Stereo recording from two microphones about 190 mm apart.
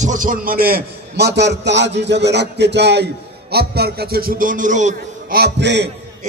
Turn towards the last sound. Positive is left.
turn(degrees=-65)  # may be behind; listen again after turning